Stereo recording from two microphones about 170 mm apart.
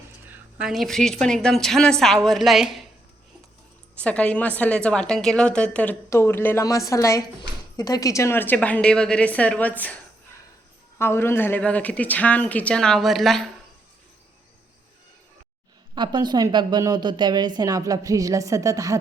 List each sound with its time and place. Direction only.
0.3 s speech: 5° right (ahead or behind)
3.9 s a woman's voice: 5° left (ahead or behind)
16.0 s a woman's voice: 25° right (ahead or behind)